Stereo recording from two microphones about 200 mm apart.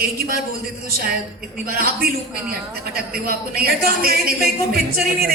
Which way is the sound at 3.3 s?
50° right (ahead or behind).